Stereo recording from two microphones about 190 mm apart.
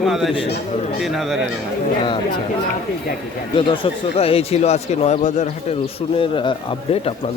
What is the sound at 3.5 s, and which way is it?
Speech, 25° left (ahead or behind).